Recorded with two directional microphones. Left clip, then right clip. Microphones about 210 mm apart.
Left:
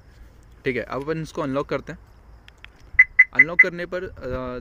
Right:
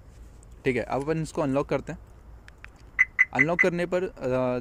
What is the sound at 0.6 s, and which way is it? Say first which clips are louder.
Speech: left 1 dB; 15° right (ahead or behind).